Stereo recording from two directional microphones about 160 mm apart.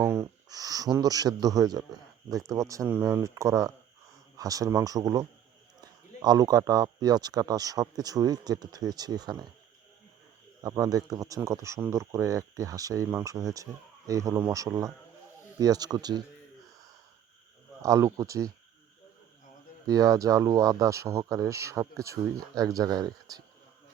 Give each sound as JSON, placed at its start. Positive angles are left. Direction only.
{"t": 0.0, "sound": "speech", "side_deg": -15}
{"t": 10.6, "sound": "speech", "side_deg": -25}
{"t": 17.8, "sound": "speech", "side_deg": -20}
{"t": 19.9, "sound": "speech", "side_deg": -20}